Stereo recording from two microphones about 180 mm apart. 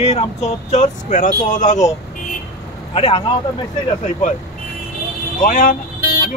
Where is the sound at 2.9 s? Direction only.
30° left (ahead or behind).